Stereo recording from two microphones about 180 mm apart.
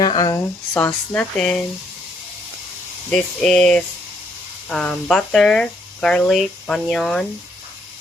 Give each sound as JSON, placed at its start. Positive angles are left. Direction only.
{"t": 0.0, "sound": "a sound", "side_deg": 25}
{"t": 0.7, "sound": "speech", "side_deg": 5}
{"t": 3.1, "sound": "speech", "side_deg": 5}